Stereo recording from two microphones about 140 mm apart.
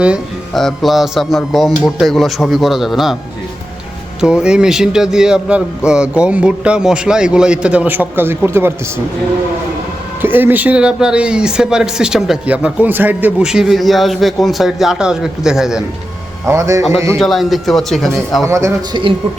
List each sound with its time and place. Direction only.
0.0 s speech: 5° right (ahead or behind)
4.2 s a man's voice: 5° right (ahead or behind)
10.2 s speech: 15° right (ahead or behind)
16.5 s a man's voice: 20° right (ahead or behind)
17.2 s speech: centre (ahead or behind)
18.4 s a man's voice: 20° right (ahead or behind)
18.9 s speech: 30° right (ahead or behind)